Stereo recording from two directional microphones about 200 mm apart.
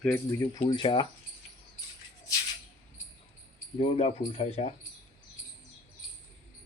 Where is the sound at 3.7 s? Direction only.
30° left (ahead or behind).